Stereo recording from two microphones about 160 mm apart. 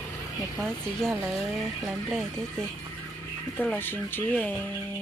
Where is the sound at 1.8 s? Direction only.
Centre (ahead or behind).